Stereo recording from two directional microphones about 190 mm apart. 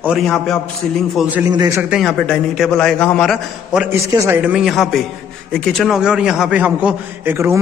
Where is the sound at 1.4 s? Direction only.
20° right (ahead or behind).